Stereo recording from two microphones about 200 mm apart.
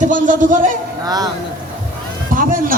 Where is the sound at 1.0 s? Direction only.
20° right (ahead or behind).